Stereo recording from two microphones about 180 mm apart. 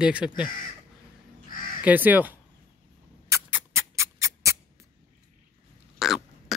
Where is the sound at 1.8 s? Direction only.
10° right (ahead or behind).